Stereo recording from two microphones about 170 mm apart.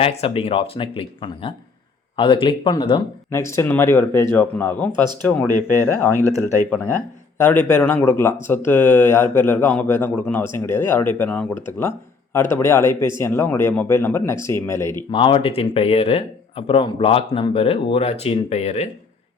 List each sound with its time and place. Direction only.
0.0 s speech: 35° left (ahead or behind)
3.2 s speech: 15° left (ahead or behind)
15.1 s speech: 30° left (ahead or behind)